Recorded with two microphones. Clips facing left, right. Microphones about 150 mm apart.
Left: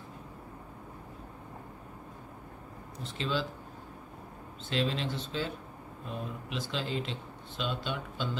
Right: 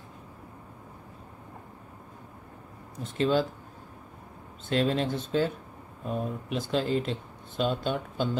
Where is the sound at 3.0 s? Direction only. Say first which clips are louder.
Right 8 dB; 50° right (ahead or behind).